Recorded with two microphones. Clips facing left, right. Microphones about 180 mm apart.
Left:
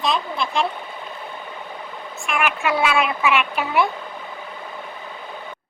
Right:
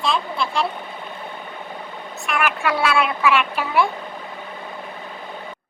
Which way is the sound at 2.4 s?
10° left (ahead or behind).